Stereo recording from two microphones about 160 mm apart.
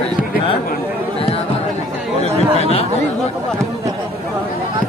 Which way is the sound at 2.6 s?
40° left (ahead or behind).